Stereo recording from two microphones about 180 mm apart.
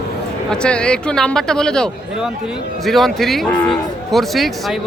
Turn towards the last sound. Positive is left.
turn(degrees=0)  # may be behind; listen again after turning